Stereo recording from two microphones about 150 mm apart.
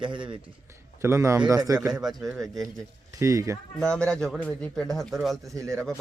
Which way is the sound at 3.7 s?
5° left (ahead or behind).